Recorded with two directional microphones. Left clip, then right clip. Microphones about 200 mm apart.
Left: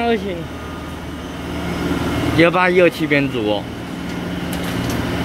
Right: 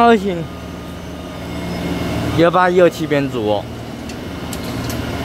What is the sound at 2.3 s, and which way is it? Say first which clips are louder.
Speech: right 1 dB; 5° right (ahead or behind).